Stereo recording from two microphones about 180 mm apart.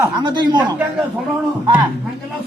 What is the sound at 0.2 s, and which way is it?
Speech, 25° right (ahead or behind).